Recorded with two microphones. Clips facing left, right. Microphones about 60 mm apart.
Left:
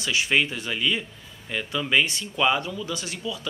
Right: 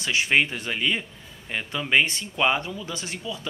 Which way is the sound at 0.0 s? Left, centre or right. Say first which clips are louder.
Right 1 dB; right.